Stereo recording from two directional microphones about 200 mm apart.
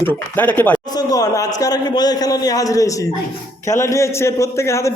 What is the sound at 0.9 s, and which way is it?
A man's voice, 20° left (ahead or behind).